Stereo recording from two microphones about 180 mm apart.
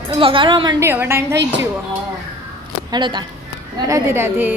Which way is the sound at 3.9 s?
15° right (ahead or behind).